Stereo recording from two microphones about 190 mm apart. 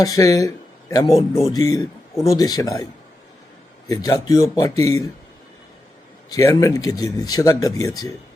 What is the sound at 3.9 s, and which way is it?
Speech, 20° left (ahead or behind).